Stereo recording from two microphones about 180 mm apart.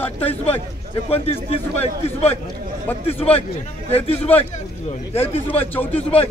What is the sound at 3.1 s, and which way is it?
Speech, 35° left (ahead or behind).